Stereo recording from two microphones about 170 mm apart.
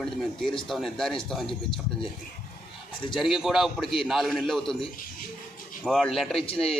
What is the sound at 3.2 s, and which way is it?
A man's voice, centre (ahead or behind).